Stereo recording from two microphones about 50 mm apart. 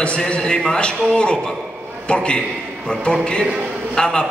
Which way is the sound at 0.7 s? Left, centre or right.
Centre.